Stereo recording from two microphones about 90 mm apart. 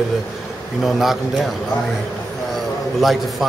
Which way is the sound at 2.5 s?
Centre (ahead or behind).